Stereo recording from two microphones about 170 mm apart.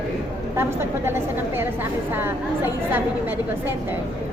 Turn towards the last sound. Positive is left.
turn(degrees=-10)  # may be behind; listen again after turning